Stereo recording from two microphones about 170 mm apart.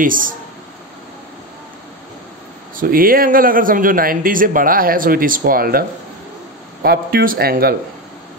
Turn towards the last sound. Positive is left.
turn(degrees=-65)  # may be behind; listen again after turning